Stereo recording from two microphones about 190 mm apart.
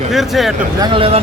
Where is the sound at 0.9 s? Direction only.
30° right (ahead or behind).